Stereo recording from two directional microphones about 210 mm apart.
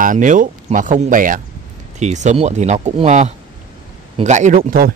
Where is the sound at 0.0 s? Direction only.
40° right (ahead or behind).